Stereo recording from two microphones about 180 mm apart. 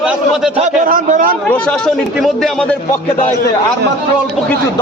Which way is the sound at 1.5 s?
5° left (ahead or behind).